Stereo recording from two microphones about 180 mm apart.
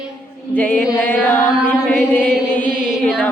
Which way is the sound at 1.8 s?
10° left (ahead or behind).